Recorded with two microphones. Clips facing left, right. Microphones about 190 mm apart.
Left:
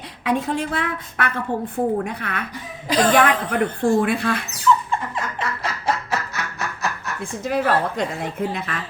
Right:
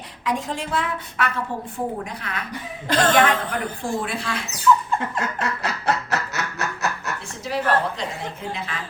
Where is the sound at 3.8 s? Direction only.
60° left (ahead or behind).